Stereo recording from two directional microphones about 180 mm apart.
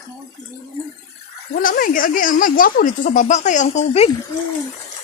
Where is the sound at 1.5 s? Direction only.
50° left (ahead or behind); by 4.1 s 35° left (ahead or behind).